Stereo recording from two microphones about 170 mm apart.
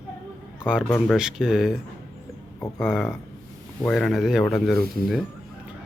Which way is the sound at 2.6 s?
15° left (ahead or behind).